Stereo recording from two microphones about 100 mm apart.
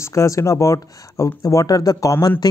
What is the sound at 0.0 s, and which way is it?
Speech, 30° left (ahead or behind).